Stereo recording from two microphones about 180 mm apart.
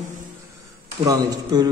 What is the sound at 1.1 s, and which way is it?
Speech, 20° right (ahead or behind).